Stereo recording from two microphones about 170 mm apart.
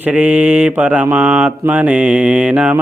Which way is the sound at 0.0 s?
5° right (ahead or behind).